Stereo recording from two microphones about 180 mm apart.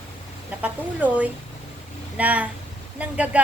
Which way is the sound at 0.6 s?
10° right (ahead or behind).